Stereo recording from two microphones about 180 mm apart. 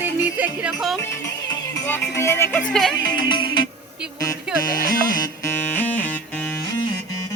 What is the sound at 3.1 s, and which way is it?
Music, 25° left (ahead or behind).